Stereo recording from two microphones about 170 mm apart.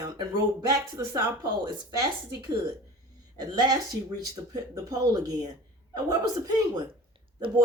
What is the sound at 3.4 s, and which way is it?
Speech, 25° right (ahead or behind).